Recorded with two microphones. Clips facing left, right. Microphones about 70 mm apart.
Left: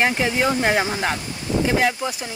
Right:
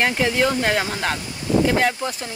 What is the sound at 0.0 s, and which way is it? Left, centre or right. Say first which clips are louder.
Speech: even; centre.